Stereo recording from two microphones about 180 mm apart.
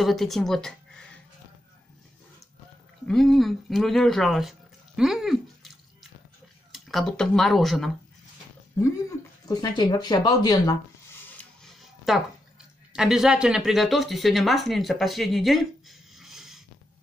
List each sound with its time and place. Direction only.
0.0 s speech: centre (ahead or behind)
3.1 s speech: centre (ahead or behind)
6.7 s speech: centre (ahead or behind)
9.5 s speech: 25° left (ahead or behind)
11.6 s a sound: centre (ahead or behind)
12.9 s speech: 5° right (ahead or behind)